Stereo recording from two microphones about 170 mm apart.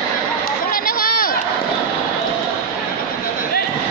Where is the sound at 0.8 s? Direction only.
60° left (ahead or behind).